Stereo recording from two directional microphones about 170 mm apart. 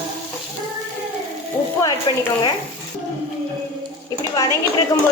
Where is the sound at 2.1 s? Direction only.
25° left (ahead or behind).